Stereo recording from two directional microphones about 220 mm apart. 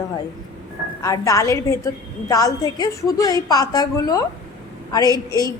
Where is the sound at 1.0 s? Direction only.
15° left (ahead or behind).